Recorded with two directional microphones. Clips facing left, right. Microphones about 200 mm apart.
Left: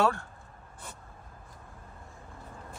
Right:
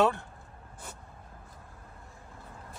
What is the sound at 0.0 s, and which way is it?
Speech, 20° right (ahead or behind).